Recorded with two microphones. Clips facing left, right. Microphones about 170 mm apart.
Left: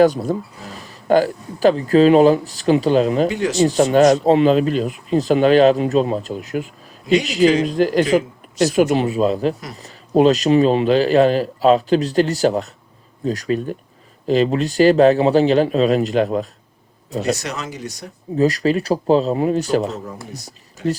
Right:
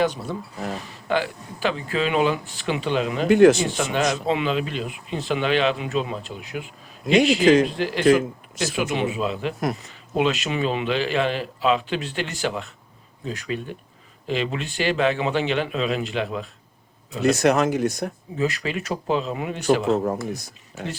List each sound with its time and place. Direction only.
0.0 s speech: 40° left (ahead or behind)
3.2 s speech: 55° right (ahead or behind)
3.7 s speech: 45° left (ahead or behind)
17.2 s speech: 55° right (ahead or behind)
18.3 s speech: 40° left (ahead or behind)
20.1 s speech: 50° right (ahead or behind)